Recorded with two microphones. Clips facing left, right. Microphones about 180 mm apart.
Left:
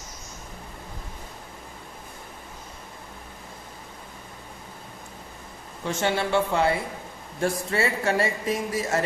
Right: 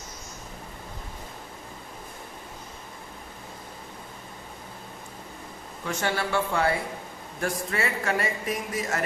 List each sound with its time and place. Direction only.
5.8 s speech: 25° left (ahead or behind)